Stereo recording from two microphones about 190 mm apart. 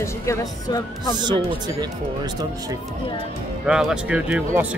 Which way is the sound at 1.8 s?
20° right (ahead or behind).